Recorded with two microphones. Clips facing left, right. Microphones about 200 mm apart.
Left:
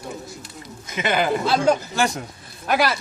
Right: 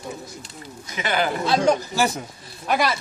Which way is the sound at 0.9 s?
20° left (ahead or behind).